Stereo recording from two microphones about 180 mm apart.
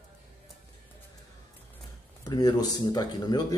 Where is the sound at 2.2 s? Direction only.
20° left (ahead or behind).